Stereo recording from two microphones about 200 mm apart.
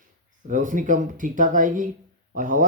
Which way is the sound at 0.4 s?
40° right (ahead or behind).